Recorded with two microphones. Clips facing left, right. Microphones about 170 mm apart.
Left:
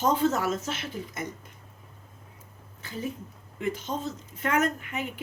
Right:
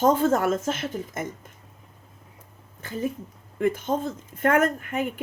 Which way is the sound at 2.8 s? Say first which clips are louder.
Right 5 dB; 45° right (ahead or behind).